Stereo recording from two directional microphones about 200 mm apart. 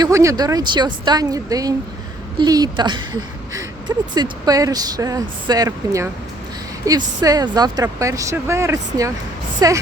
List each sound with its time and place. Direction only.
0.0 s speech: 15° right (ahead or behind)